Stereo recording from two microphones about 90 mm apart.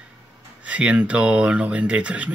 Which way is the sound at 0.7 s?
15° right (ahead or behind).